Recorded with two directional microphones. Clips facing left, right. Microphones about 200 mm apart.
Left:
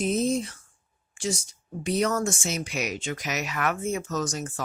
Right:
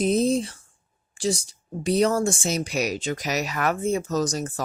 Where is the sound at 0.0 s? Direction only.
35° right (ahead or behind).